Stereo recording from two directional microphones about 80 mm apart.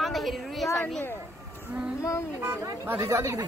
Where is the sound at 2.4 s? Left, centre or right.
Right.